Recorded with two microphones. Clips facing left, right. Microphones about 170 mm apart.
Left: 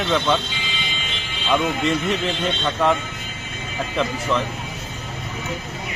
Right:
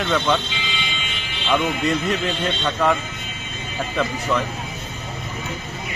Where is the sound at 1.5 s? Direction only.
Centre (ahead or behind).